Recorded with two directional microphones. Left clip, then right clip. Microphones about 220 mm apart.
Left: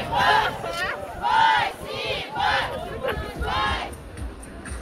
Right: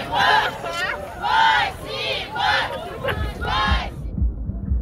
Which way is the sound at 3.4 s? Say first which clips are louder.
Right 3 dB; 25° right (ahead or behind).